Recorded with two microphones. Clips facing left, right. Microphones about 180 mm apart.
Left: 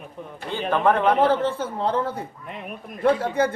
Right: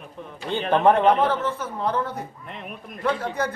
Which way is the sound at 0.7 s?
20° right (ahead or behind).